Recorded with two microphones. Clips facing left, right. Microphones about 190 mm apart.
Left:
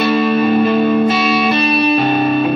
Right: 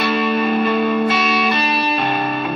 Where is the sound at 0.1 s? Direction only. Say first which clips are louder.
Left 4 dB; 25° left (ahead or behind).